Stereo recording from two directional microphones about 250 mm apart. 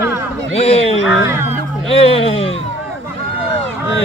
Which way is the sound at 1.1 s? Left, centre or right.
Centre.